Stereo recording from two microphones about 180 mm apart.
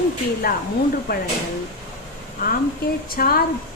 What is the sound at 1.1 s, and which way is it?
Speech, 60° left (ahead or behind).